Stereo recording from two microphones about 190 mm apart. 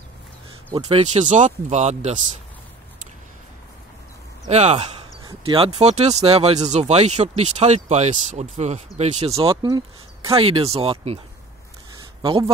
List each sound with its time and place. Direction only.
0.8 s speech: 35° right (ahead or behind)
4.5 s speech: 35° right (ahead or behind)
12.2 s speech: 25° right (ahead or behind)